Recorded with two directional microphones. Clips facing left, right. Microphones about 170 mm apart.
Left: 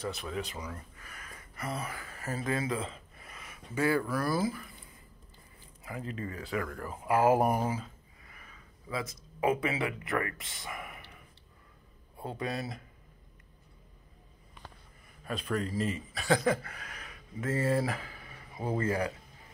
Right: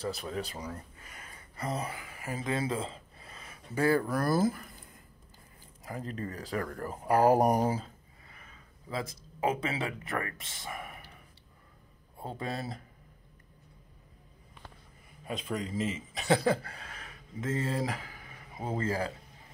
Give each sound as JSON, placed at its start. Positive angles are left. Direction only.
{"t": 0.0, "sound": "speech", "side_deg": -35}
{"t": 2.0, "sound": "speech", "side_deg": -15}
{"t": 8.9, "sound": "speech", "side_deg": -25}
{"t": 12.4, "sound": "speech", "side_deg": -30}
{"t": 15.2, "sound": "a man's voice", "side_deg": -15}